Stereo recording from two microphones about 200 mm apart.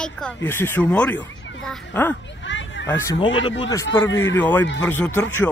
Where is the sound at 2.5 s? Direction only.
65° left (ahead or behind).